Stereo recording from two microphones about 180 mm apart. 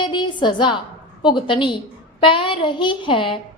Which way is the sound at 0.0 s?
25° left (ahead or behind).